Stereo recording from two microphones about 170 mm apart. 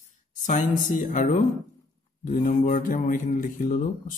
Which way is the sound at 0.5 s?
50° left (ahead or behind).